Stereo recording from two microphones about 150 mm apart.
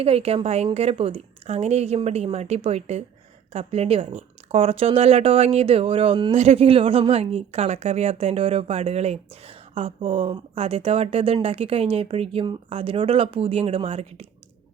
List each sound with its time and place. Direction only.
0.0 s a woman's voice: 40° right (ahead or behind)
6.3 s a woman's voice: 45° right (ahead or behind)